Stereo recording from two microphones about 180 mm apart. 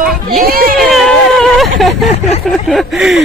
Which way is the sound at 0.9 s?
Centre (ahead or behind).